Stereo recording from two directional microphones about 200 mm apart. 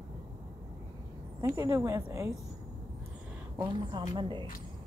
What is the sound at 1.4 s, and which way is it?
Speech, 15° right (ahead or behind).